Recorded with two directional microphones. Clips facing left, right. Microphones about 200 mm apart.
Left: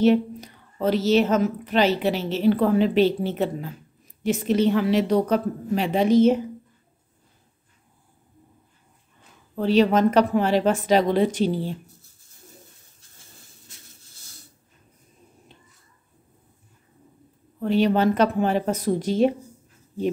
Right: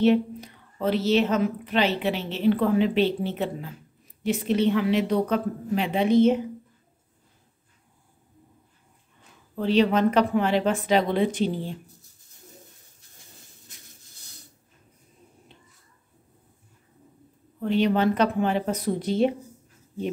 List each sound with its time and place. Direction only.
0.0 s a woman's voice: 40° left (ahead or behind)
9.6 s a woman's voice: 40° left (ahead or behind)
17.6 s speech: 40° left (ahead or behind)